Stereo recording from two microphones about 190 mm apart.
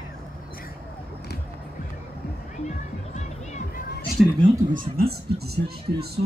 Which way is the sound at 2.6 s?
40° left (ahead or behind).